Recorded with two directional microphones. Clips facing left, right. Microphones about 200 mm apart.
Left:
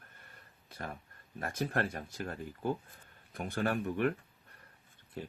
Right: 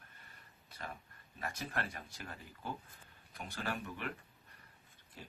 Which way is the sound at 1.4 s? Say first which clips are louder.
Left 7 dB; 50° left (ahead or behind).